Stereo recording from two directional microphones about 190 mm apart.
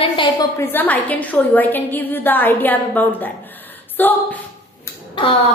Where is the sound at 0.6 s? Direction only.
10° left (ahead or behind).